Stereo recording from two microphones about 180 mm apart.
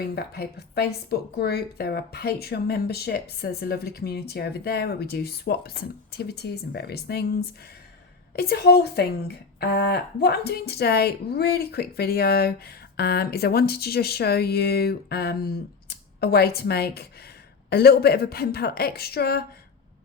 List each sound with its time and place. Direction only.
0.0 s speech: 60° left (ahead or behind)